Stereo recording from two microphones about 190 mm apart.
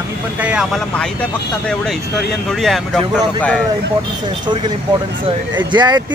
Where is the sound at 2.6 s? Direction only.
Centre (ahead or behind).